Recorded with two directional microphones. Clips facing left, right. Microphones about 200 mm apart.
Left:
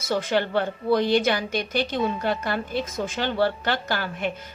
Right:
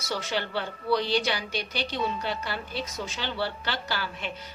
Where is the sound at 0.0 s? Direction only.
50° left (ahead or behind).